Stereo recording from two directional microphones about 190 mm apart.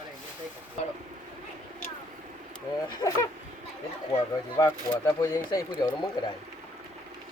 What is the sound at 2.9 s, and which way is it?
Speech, 20° left (ahead or behind).